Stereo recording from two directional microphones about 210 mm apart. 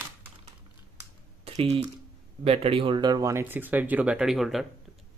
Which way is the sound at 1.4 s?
30° right (ahead or behind).